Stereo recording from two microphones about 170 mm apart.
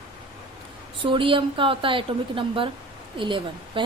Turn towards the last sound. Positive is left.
turn(degrees=-30)  # may be behind; listen again after turning